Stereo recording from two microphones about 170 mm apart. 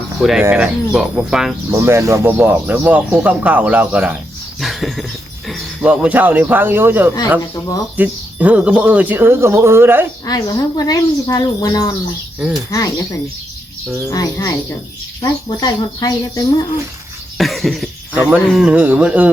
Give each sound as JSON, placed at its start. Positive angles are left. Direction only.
{"t": 0.2, "sound": "speech", "side_deg": 0}
{"t": 1.7, "sound": "speech", "side_deg": -15}
{"t": 4.6, "sound": "a sound", "side_deg": 0}
{"t": 5.5, "sound": "speech", "side_deg": -5}
{"t": 10.2, "sound": "speech", "side_deg": 20}
{"t": 12.4, "sound": "speech", "side_deg": -5}
{"t": 14.1, "sound": "speech", "side_deg": 20}
{"t": 17.3, "sound": "speech", "side_deg": 0}